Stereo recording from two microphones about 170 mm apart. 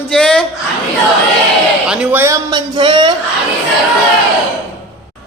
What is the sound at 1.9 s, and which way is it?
Speech, 10° right (ahead or behind).